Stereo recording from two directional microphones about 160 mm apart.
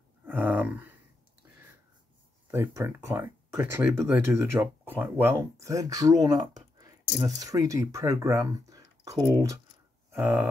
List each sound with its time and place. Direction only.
0.2 s a sound: 10° right (ahead or behind)
2.5 s speech: 15° right (ahead or behind)
10.1 s speech: 10° right (ahead or behind)